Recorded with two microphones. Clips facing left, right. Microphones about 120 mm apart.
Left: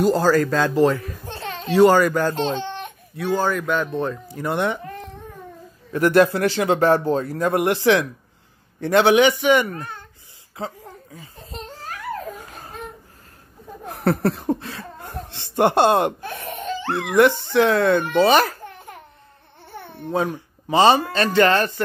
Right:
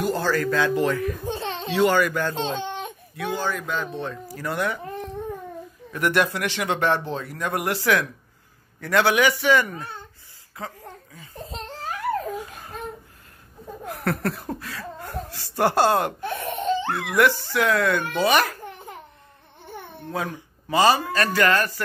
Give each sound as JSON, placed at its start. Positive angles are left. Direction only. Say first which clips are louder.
{"t": 0.0, "sound": "speech", "louder": "left 6 dB", "side_deg": 40}
{"t": 1.2, "sound": "a sound", "louder": "right 3 dB", "side_deg": -20}
{"t": 1.7, "sound": "speech", "louder": "left 6 dB", "side_deg": 40}
{"t": 2.5, "sound": "baby cry", "louder": "left 2 dB", "side_deg": -15}
{"t": 3.2, "sound": "speech", "louder": "left 6 dB", "side_deg": 40}
{"t": 4.3, "sound": "a child's voice", "louder": "left 2 dB", "side_deg": 25}
{"t": 5.9, "sound": "a child's voice", "louder": "left 7 dB", "side_deg": 30}
{"t": 13.8, "sound": "speech", "louder": "left 6 dB", "side_deg": 30}
{"t": 16.2, "sound": "laughter", "louder": "right 3 dB", "side_deg": -25}
{"t": 16.9, "sound": "a child's voice", "louder": "left 7 dB", "side_deg": 25}
{"t": 20.7, "sound": "a child's voice", "louder": "left 4 dB", "side_deg": 25}